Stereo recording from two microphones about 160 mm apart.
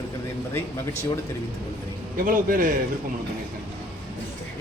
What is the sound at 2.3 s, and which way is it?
Speech, 60° right (ahead or behind).